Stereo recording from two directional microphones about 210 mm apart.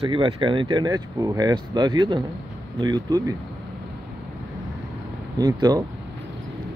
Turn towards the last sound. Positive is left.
turn(degrees=-20)  # may be behind; listen again after turning